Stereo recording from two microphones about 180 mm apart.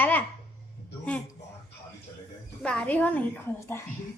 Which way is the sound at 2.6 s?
5° left (ahead or behind).